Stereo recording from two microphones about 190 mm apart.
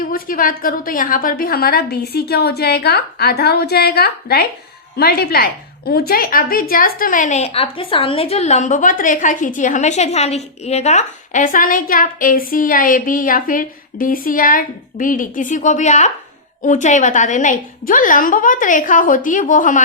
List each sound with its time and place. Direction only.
0.0 s a woman's voice: 45° left (ahead or behind)